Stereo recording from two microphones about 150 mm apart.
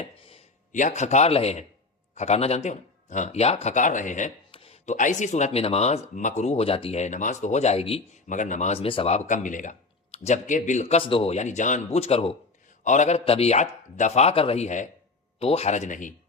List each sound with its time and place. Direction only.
0.0 s a sound: 40° left (ahead or behind)
0.7 s speech: 55° left (ahead or behind)
4.5 s a sound: 40° left (ahead or behind)
4.9 s speech: 55° left (ahead or behind)
8.3 s speech: 55° left (ahead or behind); by 12.4 s 40° left (ahead or behind)
12.8 s speech: 55° left (ahead or behind)